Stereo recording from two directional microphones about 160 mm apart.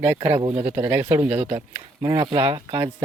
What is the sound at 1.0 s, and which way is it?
Speech, 35° right (ahead or behind).